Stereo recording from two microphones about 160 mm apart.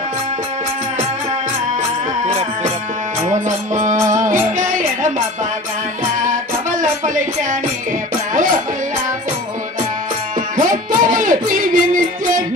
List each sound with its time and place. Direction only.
2.2 s music: 40° right (ahead or behind)
3.3 s music: 50° right (ahead or behind)
4.6 s a sound: 55° right (ahead or behind)
10.6 s music: 60° right (ahead or behind)